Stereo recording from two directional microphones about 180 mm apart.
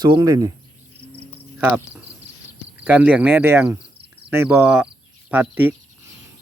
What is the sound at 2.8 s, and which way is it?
Speech, 10° right (ahead or behind).